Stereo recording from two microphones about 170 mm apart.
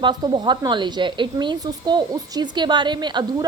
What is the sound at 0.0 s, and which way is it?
A woman's voice, 25° right (ahead or behind).